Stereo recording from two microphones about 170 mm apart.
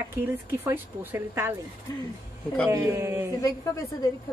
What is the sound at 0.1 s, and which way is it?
Speech, 15° right (ahead or behind).